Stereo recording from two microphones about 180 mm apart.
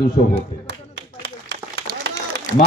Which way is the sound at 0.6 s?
80° right.